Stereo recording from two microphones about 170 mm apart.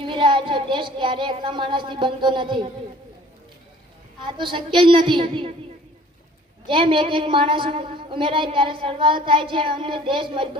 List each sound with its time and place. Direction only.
0.1 s speech: 30° right (ahead or behind)
4.3 s speech: 30° right (ahead or behind)
6.7 s a woman's voice: 30° right (ahead or behind)